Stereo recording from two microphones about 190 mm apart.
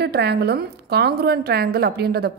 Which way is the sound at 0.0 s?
60° right (ahead or behind).